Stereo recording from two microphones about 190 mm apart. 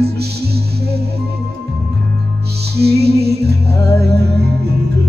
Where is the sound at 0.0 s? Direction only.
55° right (ahead or behind).